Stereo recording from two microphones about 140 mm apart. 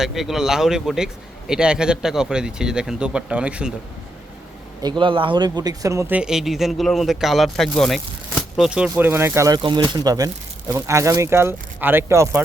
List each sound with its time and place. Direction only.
0.0 s speech: centre (ahead or behind)
4.8 s speech: 35° right (ahead or behind)
6.1 s speech: 5° right (ahead or behind); by 9.6 s 20° right (ahead or behind)
9.6 s speech: 35° right (ahead or behind)